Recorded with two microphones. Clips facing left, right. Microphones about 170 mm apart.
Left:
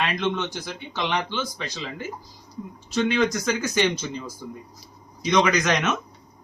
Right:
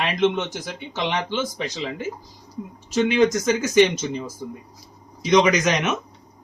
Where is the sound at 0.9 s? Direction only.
20° right (ahead or behind).